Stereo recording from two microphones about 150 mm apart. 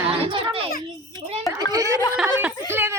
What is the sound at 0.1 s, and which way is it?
Children playing, 35° right (ahead or behind).